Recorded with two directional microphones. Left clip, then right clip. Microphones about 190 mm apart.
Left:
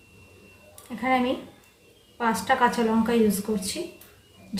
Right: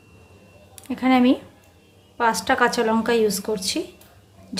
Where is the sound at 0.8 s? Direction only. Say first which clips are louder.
Right 5 dB; 60° right (ahead or behind).